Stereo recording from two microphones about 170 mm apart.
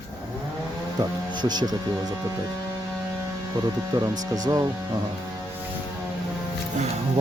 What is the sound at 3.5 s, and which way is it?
Speech, 25° right (ahead or behind).